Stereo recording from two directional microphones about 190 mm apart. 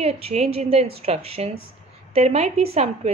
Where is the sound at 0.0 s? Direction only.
35° right (ahead or behind).